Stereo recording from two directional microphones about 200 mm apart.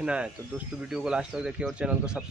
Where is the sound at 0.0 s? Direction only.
5° right (ahead or behind).